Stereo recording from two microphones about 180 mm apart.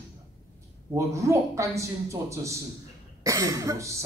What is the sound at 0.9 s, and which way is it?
A man's voice, 15° right (ahead or behind).